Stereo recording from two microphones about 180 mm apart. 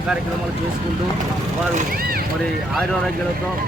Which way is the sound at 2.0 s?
55° right (ahead or behind).